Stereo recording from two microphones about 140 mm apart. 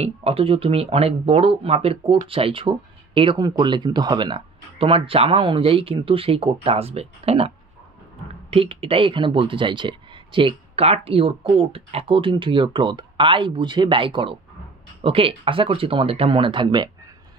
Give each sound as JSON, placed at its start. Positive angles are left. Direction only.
{"t": 0.0, "sound": "speech", "side_deg": -45}
{"t": 8.5, "sound": "speech", "side_deg": -40}